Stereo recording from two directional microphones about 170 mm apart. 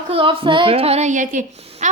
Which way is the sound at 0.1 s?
30° right (ahead or behind).